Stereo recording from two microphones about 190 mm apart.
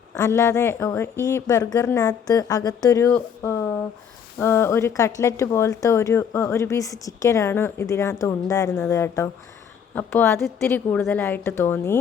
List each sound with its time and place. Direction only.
0.1 s speech: 15° left (ahead or behind)